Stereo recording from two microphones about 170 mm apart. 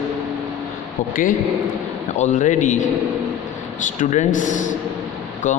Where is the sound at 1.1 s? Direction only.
50° left (ahead or behind).